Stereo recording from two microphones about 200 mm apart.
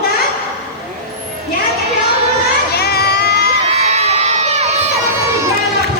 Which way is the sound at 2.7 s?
50° left (ahead or behind).